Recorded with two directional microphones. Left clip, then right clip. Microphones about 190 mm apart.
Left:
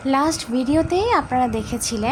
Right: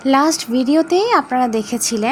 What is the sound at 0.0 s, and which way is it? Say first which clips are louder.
Speech: right 5 dB; 25° right (ahead or behind).